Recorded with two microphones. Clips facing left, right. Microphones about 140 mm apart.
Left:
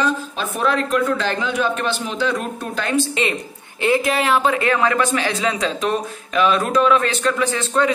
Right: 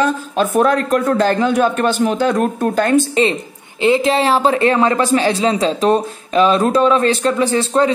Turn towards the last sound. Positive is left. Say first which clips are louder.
# right 4 dB
turn(degrees=-35)  # may be behind; listen again after turning